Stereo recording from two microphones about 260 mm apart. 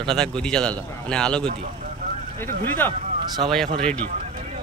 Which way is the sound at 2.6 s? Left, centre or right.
Centre.